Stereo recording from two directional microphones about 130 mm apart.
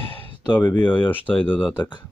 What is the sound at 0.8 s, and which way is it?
Speech, 15° left (ahead or behind).